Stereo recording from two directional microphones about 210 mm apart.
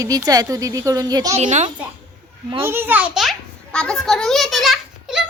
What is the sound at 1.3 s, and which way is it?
Speech, 35° right (ahead or behind).